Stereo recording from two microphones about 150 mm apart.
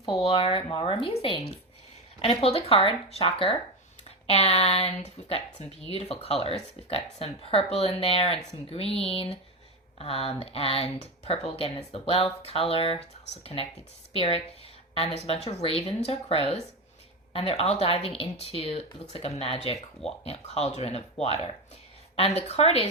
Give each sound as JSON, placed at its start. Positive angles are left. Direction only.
{"t": 0.2, "sound": "speech", "side_deg": 40}